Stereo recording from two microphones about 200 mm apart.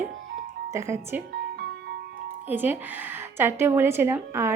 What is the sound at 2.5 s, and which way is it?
A woman's voice, 10° right (ahead or behind).